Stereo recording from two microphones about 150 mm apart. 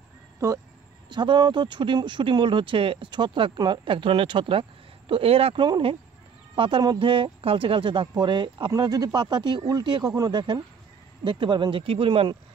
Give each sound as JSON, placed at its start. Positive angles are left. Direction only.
{"t": 1.0, "sound": "speech", "side_deg": -30}